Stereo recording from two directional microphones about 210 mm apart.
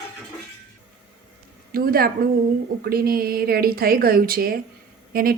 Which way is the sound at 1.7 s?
45° right (ahead or behind).